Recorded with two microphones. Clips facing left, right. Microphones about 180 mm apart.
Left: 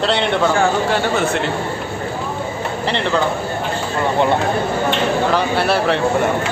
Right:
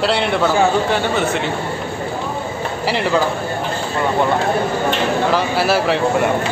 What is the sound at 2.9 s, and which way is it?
Speech, 5° right (ahead or behind).